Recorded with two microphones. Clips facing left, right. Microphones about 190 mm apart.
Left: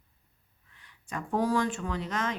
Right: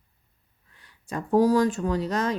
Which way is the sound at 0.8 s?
35° right (ahead or behind).